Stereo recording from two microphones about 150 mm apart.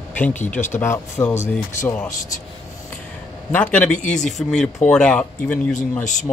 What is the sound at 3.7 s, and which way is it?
Speech, 10° left (ahead or behind).